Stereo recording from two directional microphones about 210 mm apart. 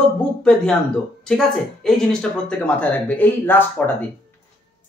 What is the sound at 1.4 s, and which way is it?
Speech, centre (ahead or behind).